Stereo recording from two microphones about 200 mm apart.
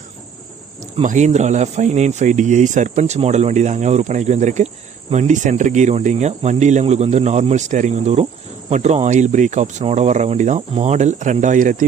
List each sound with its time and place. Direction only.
1.0 s speech: 35° right (ahead or behind)